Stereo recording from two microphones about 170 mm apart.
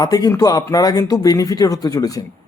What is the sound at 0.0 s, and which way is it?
A man's voice, 20° left (ahead or behind).